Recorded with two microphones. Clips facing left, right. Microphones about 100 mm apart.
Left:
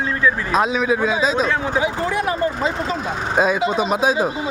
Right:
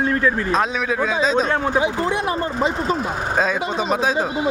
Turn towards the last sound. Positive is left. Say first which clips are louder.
# left 2 dB
turn(degrees=15)  # may be behind; listen again after turning